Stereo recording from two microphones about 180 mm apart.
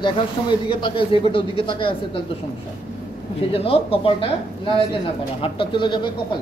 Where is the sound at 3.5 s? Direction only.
30° left (ahead or behind).